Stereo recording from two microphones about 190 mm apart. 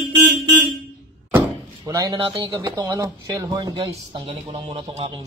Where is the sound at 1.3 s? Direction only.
15° right (ahead or behind).